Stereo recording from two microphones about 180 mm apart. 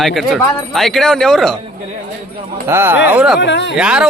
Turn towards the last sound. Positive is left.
turn(degrees=-5)  # may be behind; listen again after turning